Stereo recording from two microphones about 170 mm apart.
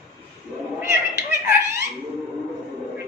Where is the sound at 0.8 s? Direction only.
15° right (ahead or behind).